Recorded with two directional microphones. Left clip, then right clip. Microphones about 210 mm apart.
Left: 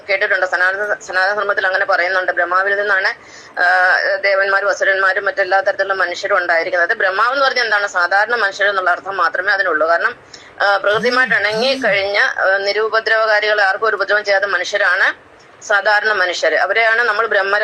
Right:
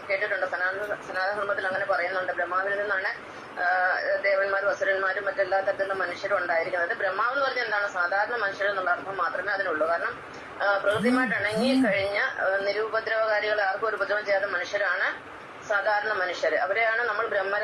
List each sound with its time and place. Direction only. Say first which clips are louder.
0.1 s speech: left 12 dB; 45° left (ahead or behind)